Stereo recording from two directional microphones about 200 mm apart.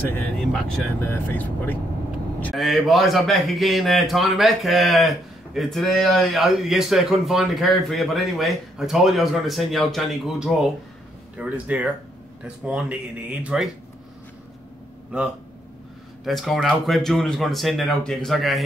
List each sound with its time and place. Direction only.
0.1 s a man's voice: 5° left (ahead or behind)
15.1 s a man's voice: 5° right (ahead or behind)